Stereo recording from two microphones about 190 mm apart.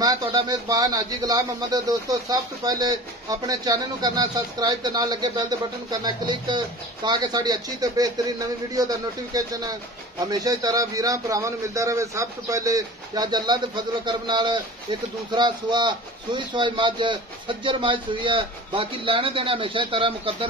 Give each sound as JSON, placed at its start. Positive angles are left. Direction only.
{"t": 0.0, "sound": "speech", "side_deg": -20}